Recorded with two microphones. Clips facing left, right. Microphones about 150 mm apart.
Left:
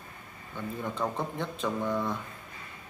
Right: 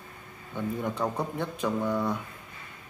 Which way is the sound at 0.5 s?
15° right (ahead or behind).